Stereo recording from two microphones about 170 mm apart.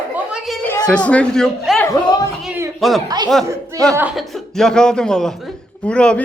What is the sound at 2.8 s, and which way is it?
A man's voice, centre (ahead or behind).